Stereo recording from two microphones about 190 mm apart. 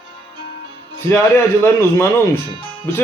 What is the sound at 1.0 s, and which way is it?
Speech, 15° left (ahead or behind).